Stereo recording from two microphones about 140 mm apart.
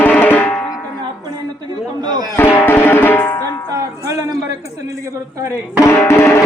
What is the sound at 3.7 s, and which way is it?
Music, 25° right (ahead or behind).